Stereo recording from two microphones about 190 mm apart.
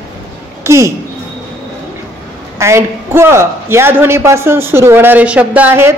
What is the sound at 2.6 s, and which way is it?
A man's voice, 15° right (ahead or behind).